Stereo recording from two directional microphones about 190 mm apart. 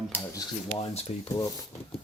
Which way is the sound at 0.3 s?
25° left (ahead or behind).